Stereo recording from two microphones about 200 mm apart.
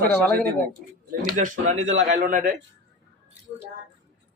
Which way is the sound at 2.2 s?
40° right (ahead or behind).